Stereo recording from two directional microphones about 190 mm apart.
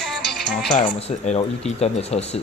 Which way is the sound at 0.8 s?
30° left (ahead or behind).